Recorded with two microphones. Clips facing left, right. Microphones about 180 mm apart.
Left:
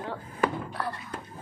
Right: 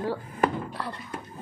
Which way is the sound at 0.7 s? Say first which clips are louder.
Left 1 dB; 25° right (ahead or behind).